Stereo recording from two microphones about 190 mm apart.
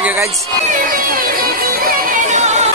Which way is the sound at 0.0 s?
10° right (ahead or behind).